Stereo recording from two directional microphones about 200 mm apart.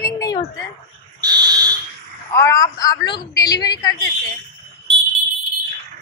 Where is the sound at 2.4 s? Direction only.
15° left (ahead or behind).